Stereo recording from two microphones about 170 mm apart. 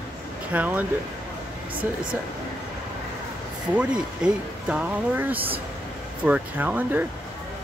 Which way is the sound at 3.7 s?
5° right (ahead or behind).